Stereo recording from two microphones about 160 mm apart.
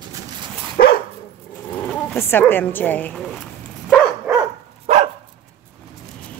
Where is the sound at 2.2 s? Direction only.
15° left (ahead or behind).